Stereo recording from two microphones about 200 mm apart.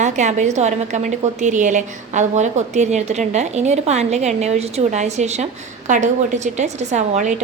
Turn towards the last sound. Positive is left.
turn(degrees=-35)  # may be behind; listen again after turning